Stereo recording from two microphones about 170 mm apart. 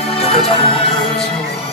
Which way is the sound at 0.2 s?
35° left (ahead or behind).